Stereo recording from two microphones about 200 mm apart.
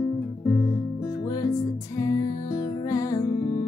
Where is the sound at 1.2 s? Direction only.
15° left (ahead or behind).